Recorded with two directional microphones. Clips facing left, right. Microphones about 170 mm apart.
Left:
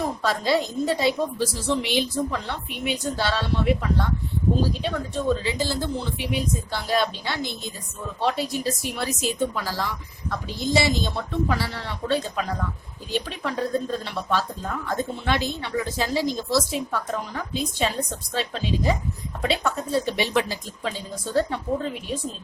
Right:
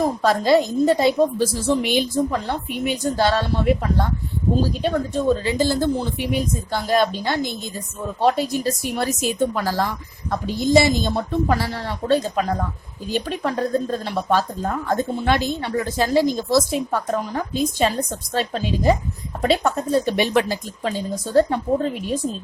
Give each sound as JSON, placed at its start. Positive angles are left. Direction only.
{"t": 0.0, "sound": "speech", "side_deg": -45}